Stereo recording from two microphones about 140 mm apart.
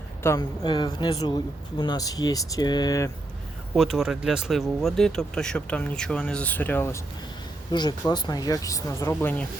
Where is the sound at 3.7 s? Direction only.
Centre (ahead or behind); by 7.0 s 20° left (ahead or behind).